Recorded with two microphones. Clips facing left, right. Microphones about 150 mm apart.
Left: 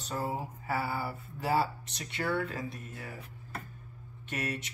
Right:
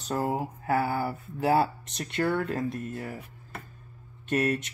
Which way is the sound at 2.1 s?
60° right (ahead or behind).